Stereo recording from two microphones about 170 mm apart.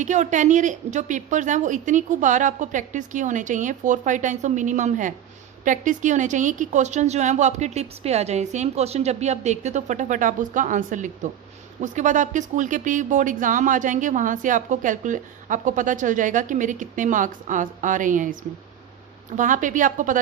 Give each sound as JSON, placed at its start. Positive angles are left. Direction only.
{"t": 0.0, "sound": "speech", "side_deg": -45}
{"t": 19.4, "sound": "speech", "side_deg": -50}